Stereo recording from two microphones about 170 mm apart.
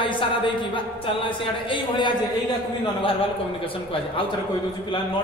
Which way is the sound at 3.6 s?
30° left (ahead or behind).